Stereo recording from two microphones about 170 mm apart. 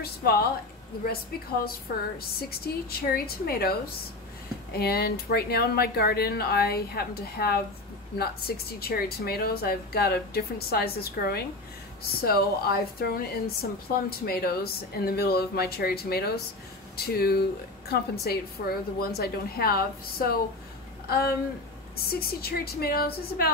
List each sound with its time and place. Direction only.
0.0 s a woman's voice: 65° left (ahead or behind)
22.1 s a woman's voice: 65° left (ahead or behind)